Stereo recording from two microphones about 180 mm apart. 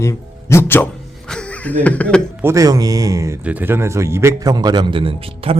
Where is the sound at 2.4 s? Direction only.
15° right (ahead or behind).